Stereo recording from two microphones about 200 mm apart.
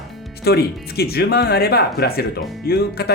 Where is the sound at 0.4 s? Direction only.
50° left (ahead or behind).